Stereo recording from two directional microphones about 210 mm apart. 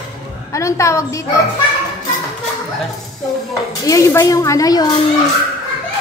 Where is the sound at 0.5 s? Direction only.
15° left (ahead or behind).